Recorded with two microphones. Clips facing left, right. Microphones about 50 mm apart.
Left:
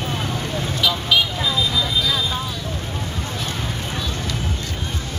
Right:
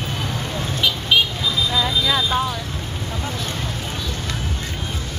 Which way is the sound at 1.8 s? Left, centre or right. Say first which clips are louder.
Right 2 dB; right.